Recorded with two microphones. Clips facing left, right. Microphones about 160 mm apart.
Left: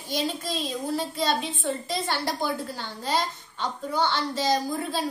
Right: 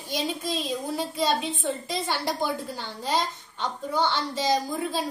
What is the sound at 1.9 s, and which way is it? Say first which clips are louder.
Speech: even; 15° right (ahead or behind).